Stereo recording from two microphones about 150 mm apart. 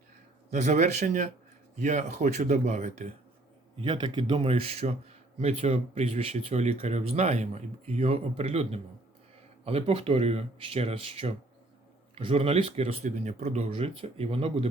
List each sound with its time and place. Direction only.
0.5 s speech: 50° right (ahead or behind)
3.8 s speech: 30° right (ahead or behind)